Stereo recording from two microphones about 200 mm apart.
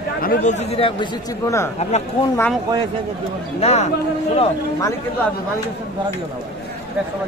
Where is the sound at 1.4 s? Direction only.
15° left (ahead or behind).